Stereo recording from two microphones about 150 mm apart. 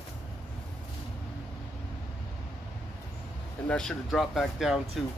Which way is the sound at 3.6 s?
5° left (ahead or behind).